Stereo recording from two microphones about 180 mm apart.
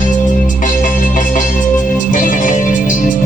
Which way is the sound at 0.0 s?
45° left (ahead or behind).